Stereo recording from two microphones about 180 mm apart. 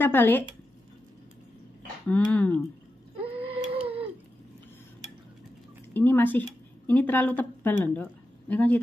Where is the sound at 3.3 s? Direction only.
30° right (ahead or behind).